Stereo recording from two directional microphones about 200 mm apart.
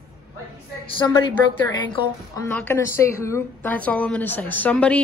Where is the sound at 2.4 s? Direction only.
10° left (ahead or behind).